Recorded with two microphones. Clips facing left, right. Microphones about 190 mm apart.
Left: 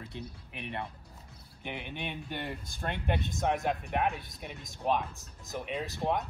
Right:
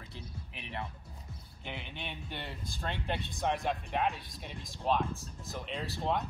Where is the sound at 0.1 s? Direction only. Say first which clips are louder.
Left 4 dB; 55° left (ahead or behind).